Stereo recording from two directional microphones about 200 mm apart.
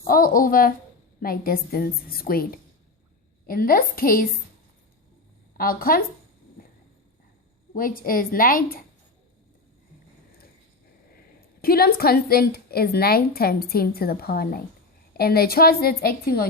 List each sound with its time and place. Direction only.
0.1 s a woman's voice: 45° left (ahead or behind)
5.5 s a woman's voice: 45° left (ahead or behind)
7.7 s a woman's voice: 45° left (ahead or behind)
11.3 s a woman's voice: 50° left (ahead or behind)